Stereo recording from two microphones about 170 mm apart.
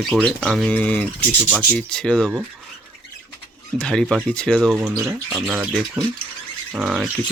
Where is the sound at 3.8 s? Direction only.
5° left (ahead or behind).